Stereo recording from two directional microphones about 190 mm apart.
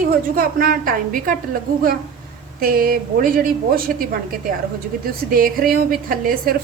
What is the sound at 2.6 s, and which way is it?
A woman's voice, 50° right (ahead or behind).